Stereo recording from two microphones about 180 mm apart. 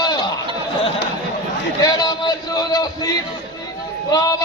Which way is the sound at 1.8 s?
20° left (ahead or behind).